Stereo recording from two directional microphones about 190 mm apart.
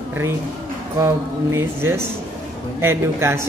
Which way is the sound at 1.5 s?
15° right (ahead or behind).